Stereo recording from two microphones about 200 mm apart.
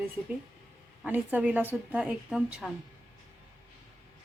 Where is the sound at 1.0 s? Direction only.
10° right (ahead or behind).